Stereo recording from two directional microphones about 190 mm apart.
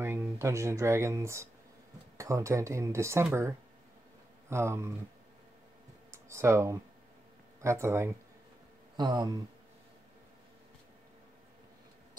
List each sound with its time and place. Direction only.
0.0 s speech: 10° right (ahead or behind)
6.1 s speech: 15° right (ahead or behind)